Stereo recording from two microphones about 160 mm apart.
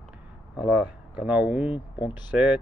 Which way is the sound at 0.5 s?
10° right (ahead or behind).